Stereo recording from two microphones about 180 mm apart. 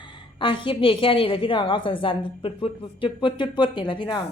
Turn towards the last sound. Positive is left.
turn(degrees=25)  # may be behind; listen again after turning